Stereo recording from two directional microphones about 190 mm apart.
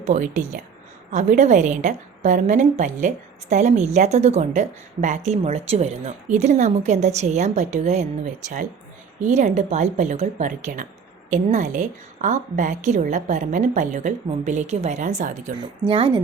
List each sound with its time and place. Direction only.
0.0 s a woman's voice: 40° right (ahead or behind)
15.9 s a woman's voice: 25° right (ahead or behind)